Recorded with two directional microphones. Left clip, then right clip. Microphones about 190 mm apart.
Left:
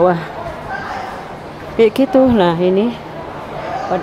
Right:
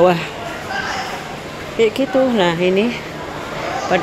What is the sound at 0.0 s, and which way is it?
Speech, 15° left (ahead or behind).